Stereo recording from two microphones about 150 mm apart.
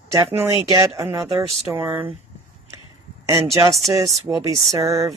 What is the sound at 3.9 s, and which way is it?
Speech, 20° right (ahead or behind).